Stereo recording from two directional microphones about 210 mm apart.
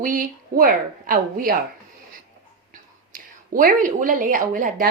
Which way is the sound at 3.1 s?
40° right (ahead or behind).